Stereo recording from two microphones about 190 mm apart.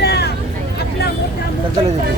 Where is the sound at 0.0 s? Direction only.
60° left (ahead or behind).